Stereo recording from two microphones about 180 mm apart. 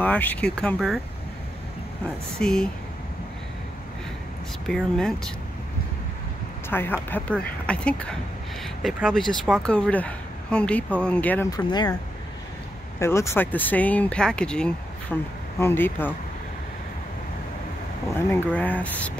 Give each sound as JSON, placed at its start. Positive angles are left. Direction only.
{"t": 0.0, "sound": "speech", "side_deg": 10}
{"t": 2.3, "sound": "speech", "side_deg": 5}
{"t": 4.6, "sound": "speech", "side_deg": 0}
{"t": 6.7, "sound": "speech", "side_deg": 10}
{"t": 11.5, "sound": "speech", "side_deg": 20}
{"t": 13.0, "sound": "speech", "side_deg": 15}
{"t": 18.1, "sound": "speech", "side_deg": 10}